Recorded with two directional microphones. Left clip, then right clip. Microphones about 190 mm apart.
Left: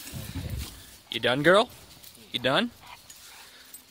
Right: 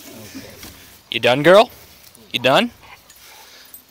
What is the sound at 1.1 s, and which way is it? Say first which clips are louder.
Speech: right 10 dB; 5° right (ahead or behind).